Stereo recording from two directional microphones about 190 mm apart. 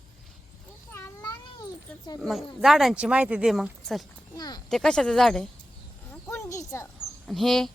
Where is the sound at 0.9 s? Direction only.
15° left (ahead or behind).